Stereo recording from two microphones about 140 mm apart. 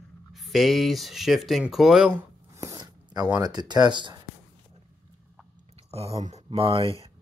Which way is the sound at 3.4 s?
30° right (ahead or behind).